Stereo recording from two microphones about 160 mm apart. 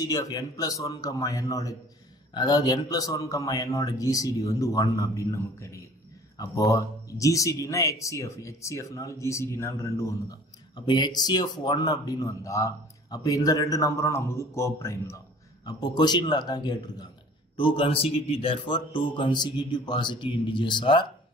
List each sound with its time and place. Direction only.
0.0 s a man's voice: 25° left (ahead or behind)